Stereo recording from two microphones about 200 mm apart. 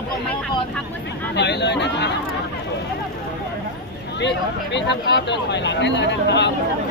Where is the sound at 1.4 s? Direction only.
60° left (ahead or behind).